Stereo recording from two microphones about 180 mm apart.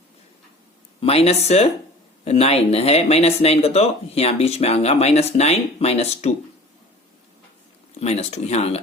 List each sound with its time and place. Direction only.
1.0 s speech: 35° left (ahead or behind)
7.9 s speech: 35° left (ahead or behind)